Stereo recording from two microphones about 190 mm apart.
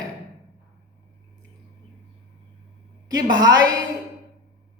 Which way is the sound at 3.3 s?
20° right (ahead or behind).